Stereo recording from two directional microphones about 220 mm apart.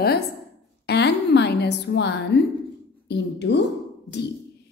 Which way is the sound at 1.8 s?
50° left (ahead or behind).